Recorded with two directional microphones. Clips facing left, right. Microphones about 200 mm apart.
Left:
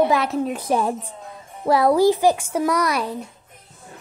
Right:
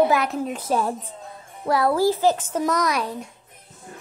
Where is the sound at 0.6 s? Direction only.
15° left (ahead or behind).